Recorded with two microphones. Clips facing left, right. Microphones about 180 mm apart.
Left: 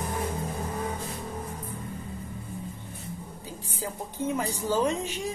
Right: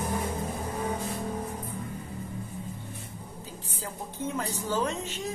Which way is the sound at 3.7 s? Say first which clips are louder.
Left 4 dB; 10° left (ahead or behind).